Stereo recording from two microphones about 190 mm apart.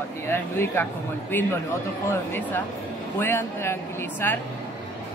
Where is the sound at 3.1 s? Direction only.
10° left (ahead or behind).